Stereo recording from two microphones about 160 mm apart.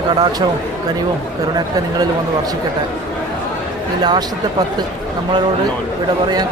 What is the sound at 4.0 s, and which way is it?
Speech, 25° right (ahead or behind).